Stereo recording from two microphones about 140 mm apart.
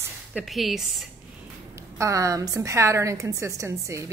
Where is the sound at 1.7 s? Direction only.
20° right (ahead or behind).